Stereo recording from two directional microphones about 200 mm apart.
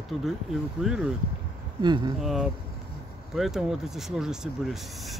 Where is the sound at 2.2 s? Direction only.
Centre (ahead or behind).